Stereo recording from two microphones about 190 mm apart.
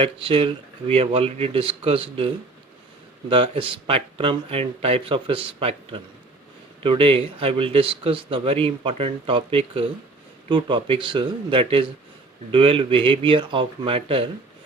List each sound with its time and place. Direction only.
0.0 s speech: 30° right (ahead or behind)